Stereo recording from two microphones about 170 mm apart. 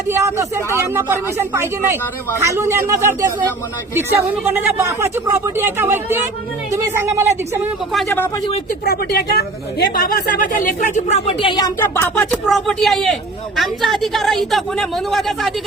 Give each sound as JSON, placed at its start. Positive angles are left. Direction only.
{"t": 0.1, "sound": "speech", "side_deg": -15}
{"t": 4.5, "sound": "speech", "side_deg": -15}
{"t": 8.8, "sound": "speech", "side_deg": 65}
{"t": 11.8, "sound": "a woman's voice", "side_deg": 15}